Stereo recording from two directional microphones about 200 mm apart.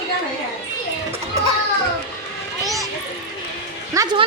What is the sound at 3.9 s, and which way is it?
Music, 20° right (ahead or behind).